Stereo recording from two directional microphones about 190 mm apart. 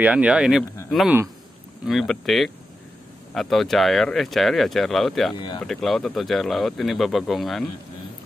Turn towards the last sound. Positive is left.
turn(degrees=0)  # may be behind; listen again after turning